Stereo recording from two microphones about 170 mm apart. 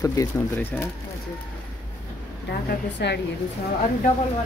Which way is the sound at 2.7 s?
85° left.